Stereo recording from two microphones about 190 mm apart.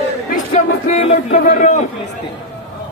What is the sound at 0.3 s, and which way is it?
A man's voice, 40° left (ahead or behind).